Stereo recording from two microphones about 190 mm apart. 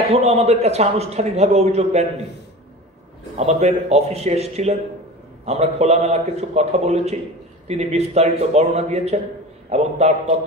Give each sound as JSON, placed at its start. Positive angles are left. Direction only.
{"t": 0.1, "sound": "a man's voice", "side_deg": -35}
{"t": 3.3, "sound": "a man's voice", "side_deg": -35}